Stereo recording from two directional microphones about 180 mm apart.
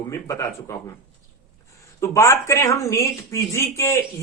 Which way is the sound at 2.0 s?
15° left (ahead or behind).